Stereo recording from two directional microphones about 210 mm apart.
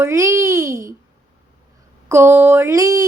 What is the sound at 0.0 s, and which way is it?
Speech, 15° right (ahead or behind).